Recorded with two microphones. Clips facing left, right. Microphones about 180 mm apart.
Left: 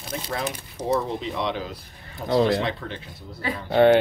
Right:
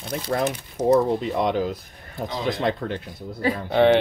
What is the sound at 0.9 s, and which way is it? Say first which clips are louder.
Speech: right 6 dB; 50° right (ahead or behind).